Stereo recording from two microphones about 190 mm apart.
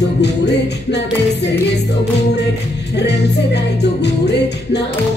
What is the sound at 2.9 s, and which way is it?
Music, 65° left (ahead or behind).